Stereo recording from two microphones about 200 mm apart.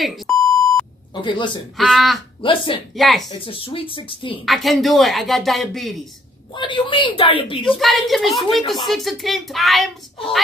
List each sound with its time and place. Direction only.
0.0 s beep: centre (ahead or behind)
1.1 s speech: 25° left (ahead or behind)
1.8 s speech: centre (ahead or behind)
2.4 s speech: 25° left (ahead or behind)
2.9 s speech: centre (ahead or behind)
3.3 s speech: 25° left (ahead or behind)
4.5 s speech: centre (ahead or behind)
6.5 s speech: 25° left (ahead or behind)
7.6 s speech: centre (ahead or behind)